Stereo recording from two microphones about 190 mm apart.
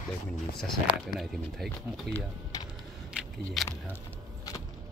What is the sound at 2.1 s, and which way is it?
Speech, 60° right (ahead or behind).